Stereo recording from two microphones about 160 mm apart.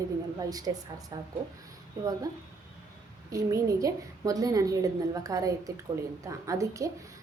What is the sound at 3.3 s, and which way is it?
A woman's voice, 20° right (ahead or behind).